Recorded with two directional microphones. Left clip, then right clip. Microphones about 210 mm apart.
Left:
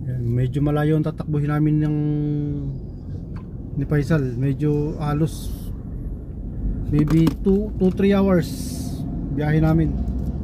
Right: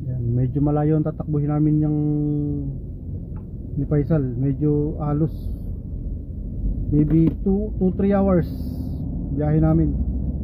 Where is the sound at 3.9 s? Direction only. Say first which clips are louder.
Even; 5° left (ahead or behind).